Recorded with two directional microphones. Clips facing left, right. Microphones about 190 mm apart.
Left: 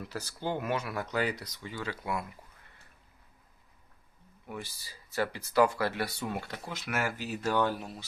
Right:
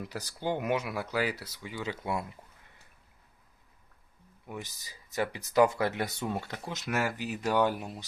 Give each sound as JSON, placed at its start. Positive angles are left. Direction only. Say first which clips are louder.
{"t": 0.1, "sound": "speech", "louder": "right 1 dB", "side_deg": -15}
{"t": 4.4, "sound": "speech", "louder": "even", "side_deg": -15}